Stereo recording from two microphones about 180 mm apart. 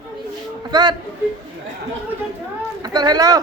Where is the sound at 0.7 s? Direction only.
25° right (ahead or behind).